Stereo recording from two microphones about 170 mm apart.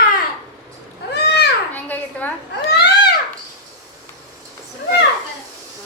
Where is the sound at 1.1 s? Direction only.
75° left (ahead or behind).